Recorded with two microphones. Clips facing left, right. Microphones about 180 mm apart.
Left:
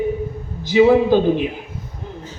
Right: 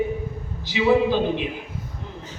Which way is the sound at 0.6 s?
50° left (ahead or behind).